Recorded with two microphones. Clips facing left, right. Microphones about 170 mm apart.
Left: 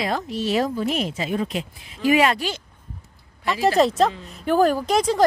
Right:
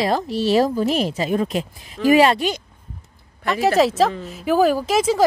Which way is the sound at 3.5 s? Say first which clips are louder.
Right 1 dB; centre (ahead or behind).